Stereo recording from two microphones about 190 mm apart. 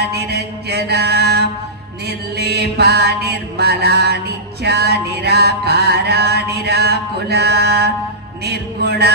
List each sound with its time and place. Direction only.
0.0 s mantra: 60° right (ahead or behind)
4.6 s music: 60° right (ahead or behind)